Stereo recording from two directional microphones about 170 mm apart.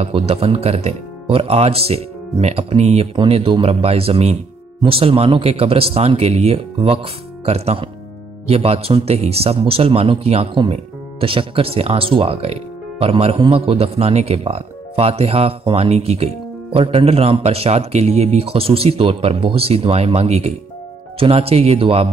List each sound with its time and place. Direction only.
0.0 s a man's voice: 35° right (ahead or behind)